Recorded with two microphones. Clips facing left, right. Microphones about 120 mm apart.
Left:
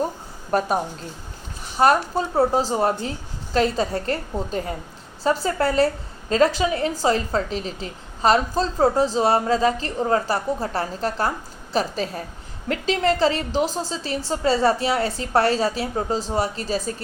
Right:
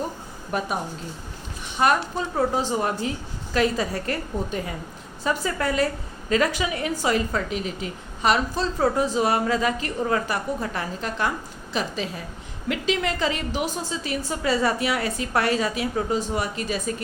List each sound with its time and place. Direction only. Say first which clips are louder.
1.8 s a woman's voice: left 4 dB; 35° left (ahead or behind)